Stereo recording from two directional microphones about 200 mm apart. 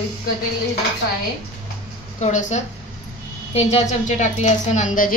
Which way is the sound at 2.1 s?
35° left (ahead or behind).